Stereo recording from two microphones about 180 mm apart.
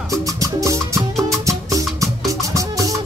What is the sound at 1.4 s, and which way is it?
Music, 20° right (ahead or behind).